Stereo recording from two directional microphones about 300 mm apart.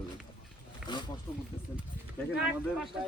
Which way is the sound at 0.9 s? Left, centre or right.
Centre.